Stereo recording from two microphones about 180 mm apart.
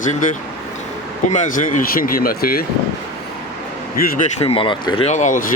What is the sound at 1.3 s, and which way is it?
Speech, 45° left (ahead or behind).